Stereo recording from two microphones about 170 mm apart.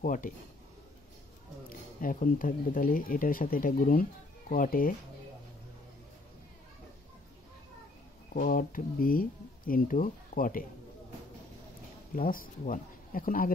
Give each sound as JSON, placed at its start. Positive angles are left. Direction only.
{"t": 0.0, "sound": "speech", "side_deg": 50}
{"t": 1.7, "sound": "speech", "side_deg": 55}
{"t": 8.4, "sound": "speech", "side_deg": 55}
{"t": 12.2, "sound": "speech", "side_deg": 55}